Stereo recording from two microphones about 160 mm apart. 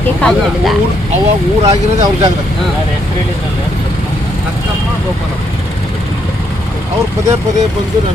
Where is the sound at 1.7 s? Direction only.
20° right (ahead or behind).